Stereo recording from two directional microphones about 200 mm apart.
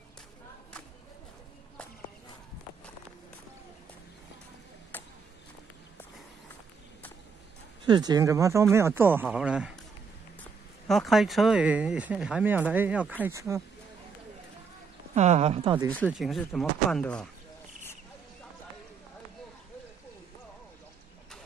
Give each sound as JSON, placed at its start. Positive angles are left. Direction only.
{"t": 4.9, "sound": "a sound", "side_deg": 10}
{"t": 7.8, "sound": "speech", "side_deg": -20}
{"t": 10.9, "sound": "speech", "side_deg": 0}
{"t": 15.1, "sound": "speech", "side_deg": -35}
{"t": 16.1, "sound": "speech", "side_deg": 0}